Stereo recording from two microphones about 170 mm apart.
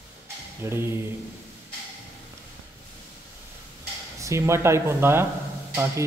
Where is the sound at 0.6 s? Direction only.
15° right (ahead or behind).